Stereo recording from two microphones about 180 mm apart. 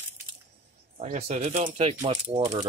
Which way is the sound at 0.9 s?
45° right (ahead or behind).